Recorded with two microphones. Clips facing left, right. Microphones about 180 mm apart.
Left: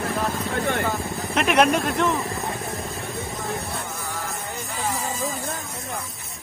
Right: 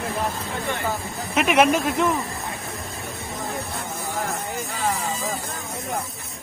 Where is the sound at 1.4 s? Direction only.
Centre (ahead or behind).